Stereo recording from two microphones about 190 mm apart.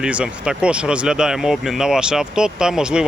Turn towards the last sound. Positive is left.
turn(degrees=-5)  # may be behind; listen again after turning